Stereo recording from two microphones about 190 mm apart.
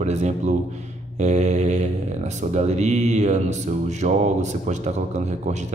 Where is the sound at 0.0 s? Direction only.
35° right (ahead or behind).